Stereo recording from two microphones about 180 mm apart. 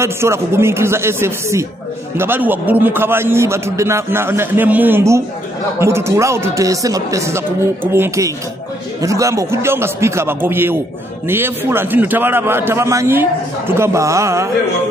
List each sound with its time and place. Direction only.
0.0 s a man's voice: 15° right (ahead or behind)